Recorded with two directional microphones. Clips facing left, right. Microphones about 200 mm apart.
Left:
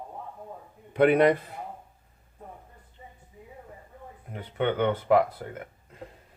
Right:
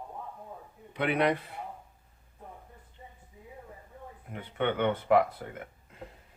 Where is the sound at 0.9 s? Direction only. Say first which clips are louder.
Left 8 dB; 50° left (ahead or behind).